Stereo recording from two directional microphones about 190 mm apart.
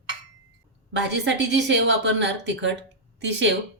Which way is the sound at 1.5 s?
70° right (ahead or behind).